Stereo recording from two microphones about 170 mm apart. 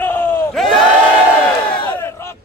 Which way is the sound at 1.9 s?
15° left (ahead or behind).